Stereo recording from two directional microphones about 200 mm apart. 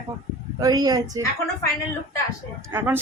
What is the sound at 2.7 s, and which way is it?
Speech, 10° right (ahead or behind).